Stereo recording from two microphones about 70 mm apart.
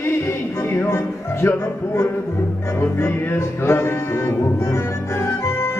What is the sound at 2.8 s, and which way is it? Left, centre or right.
Music, left.